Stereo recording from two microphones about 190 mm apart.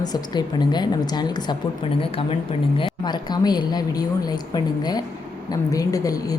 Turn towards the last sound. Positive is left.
turn(degrees=20)  # may be behind; listen again after turning